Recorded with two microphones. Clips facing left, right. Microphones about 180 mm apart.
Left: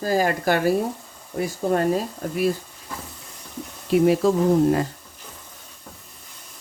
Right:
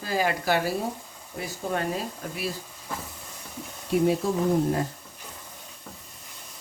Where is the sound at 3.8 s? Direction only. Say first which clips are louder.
Left 5 dB; 90° left.